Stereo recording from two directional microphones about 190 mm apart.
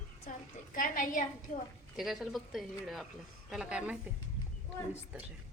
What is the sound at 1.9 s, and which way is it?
Speech, centre (ahead or behind).